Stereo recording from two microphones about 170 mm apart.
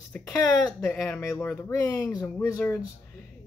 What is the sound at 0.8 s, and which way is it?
Speech, 10° left (ahead or behind).